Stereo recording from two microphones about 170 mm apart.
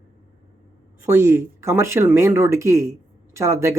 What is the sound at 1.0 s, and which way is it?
Speech, 15° right (ahead or behind).